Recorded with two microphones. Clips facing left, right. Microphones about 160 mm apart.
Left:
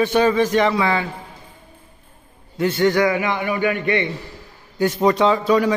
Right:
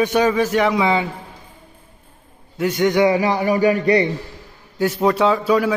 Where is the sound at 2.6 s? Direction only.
15° right (ahead or behind).